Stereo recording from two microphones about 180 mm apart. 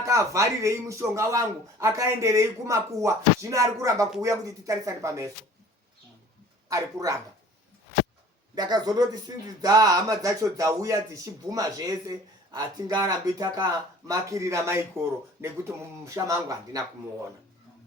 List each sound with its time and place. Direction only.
0.0 s a man's voice: 15° right (ahead or behind)
6.7 s speech: 20° right (ahead or behind)
8.5 s a man's voice: 25° right (ahead or behind)